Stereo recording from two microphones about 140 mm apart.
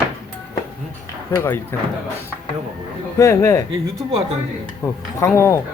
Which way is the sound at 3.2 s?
20° left (ahead or behind).